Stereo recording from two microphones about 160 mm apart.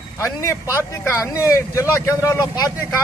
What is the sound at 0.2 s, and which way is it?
Speech, 20° left (ahead or behind).